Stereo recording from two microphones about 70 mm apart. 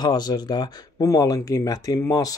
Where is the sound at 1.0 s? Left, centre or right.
Left.